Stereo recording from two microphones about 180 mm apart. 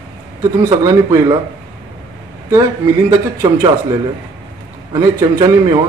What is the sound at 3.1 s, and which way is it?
Speech, 25° right (ahead or behind).